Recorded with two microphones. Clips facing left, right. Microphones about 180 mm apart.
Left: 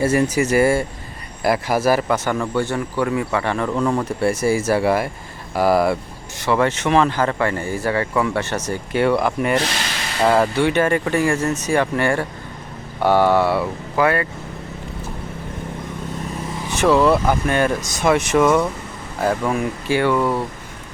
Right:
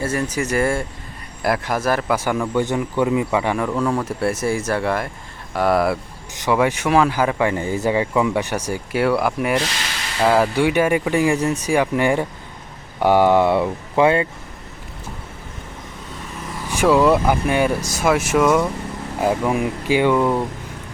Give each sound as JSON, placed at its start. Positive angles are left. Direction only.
{"t": 0.3, "sound": "speech", "side_deg": 5}
{"t": 2.1, "sound": "speech", "side_deg": -10}
{"t": 3.7, "sound": "speech", "side_deg": 5}
{"t": 6.4, "sound": "speech", "side_deg": -10}
{"t": 16.6, "sound": "speech", "side_deg": -10}